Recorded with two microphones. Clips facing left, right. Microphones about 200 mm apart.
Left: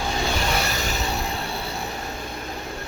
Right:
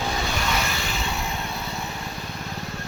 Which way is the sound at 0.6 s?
40° left (ahead or behind).